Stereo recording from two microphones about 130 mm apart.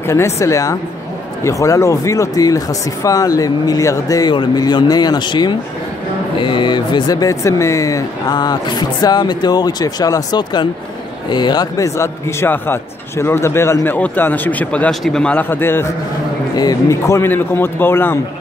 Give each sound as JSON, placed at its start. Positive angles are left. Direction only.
{"t": 0.0, "sound": "a man's voice", "side_deg": 20}